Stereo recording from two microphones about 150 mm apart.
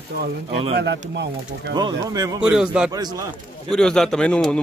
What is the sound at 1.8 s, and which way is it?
Speech, 25° right (ahead or behind).